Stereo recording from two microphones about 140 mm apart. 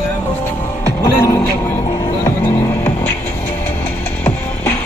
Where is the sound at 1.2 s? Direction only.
15° left (ahead or behind).